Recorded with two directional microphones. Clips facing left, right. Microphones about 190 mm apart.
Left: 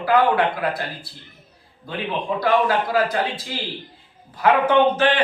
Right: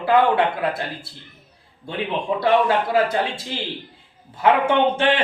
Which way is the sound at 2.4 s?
25° right (ahead or behind).